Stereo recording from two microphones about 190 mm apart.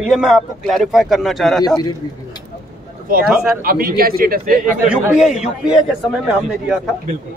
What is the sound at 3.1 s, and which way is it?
A man's voice, 50° right (ahead or behind).